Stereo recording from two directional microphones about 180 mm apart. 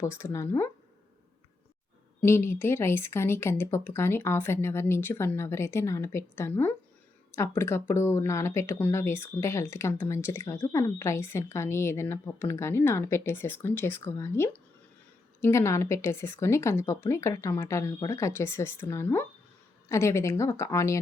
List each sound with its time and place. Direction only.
0.0 s speech: 15° left (ahead or behind)
2.2 s speech: 15° left (ahead or behind)